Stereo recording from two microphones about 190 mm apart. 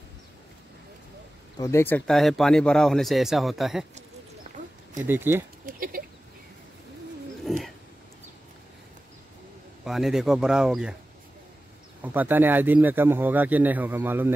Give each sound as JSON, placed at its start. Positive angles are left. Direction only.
{"t": 1.6, "sound": "a man's voice", "side_deg": 15}
{"t": 5.0, "sound": "speech", "side_deg": -10}
{"t": 5.7, "sound": "speech", "side_deg": -50}
{"t": 7.4, "sound": "roaring cats", "side_deg": 0}
{"t": 9.8, "sound": "a man's voice", "side_deg": 0}
{"t": 12.0, "sound": "speech", "side_deg": -10}